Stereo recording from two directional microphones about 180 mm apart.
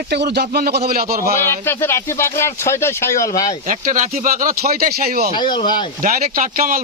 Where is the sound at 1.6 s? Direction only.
15° left (ahead or behind).